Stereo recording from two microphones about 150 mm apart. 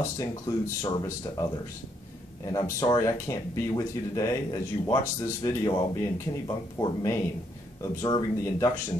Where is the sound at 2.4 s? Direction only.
25° left (ahead or behind).